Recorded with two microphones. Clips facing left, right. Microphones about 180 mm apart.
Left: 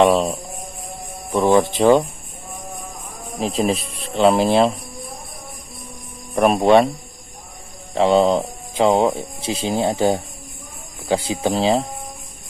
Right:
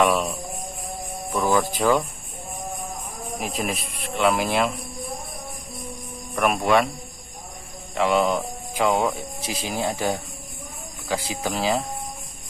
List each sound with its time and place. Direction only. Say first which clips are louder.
0.0 s speech: left 6 dB; 30° left (ahead or behind)
3.3 s speech: left 8 dB; 30° left (ahead or behind)
6.3 s speech: left 6 dB; 30° left (ahead or behind)
7.9 s speech: left 6 dB; 30° left (ahead or behind)